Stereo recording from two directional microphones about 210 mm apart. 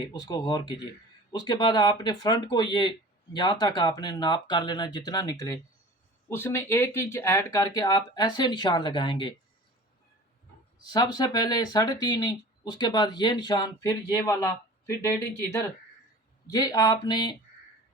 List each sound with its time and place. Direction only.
0.0 s speech: 20° left (ahead or behind)
10.8 s speech: 20° left (ahead or behind)